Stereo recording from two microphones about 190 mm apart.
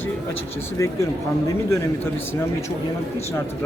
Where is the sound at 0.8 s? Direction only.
15° left (ahead or behind).